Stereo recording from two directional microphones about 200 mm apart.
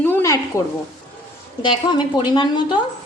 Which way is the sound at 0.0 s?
10° left (ahead or behind).